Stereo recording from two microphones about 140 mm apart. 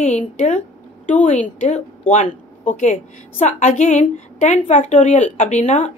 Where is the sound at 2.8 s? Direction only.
60° left (ahead or behind).